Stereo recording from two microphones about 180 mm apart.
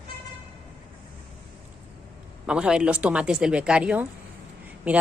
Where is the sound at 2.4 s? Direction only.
5° right (ahead or behind).